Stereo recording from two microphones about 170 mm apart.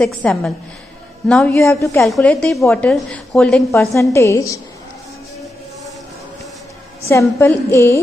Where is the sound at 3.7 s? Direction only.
15° left (ahead or behind).